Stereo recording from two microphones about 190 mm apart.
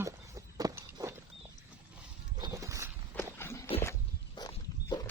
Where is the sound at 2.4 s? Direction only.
20° right (ahead or behind).